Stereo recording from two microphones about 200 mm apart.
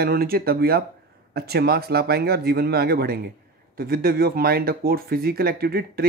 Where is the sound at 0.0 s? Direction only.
50° right (ahead or behind).